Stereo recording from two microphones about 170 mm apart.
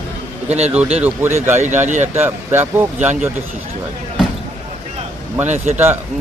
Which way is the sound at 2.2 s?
10° right (ahead or behind).